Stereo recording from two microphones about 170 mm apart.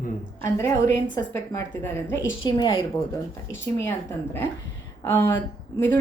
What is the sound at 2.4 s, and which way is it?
Speech, 25° left (ahead or behind).